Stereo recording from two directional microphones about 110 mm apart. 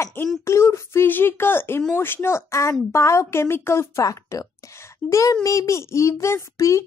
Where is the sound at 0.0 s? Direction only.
20° left (ahead or behind).